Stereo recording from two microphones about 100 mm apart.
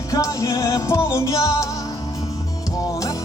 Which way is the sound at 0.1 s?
35° left (ahead or behind).